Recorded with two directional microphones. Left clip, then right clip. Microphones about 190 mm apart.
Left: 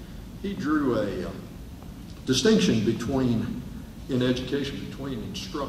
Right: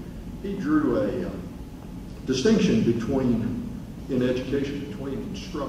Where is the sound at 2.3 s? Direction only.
30° left (ahead or behind).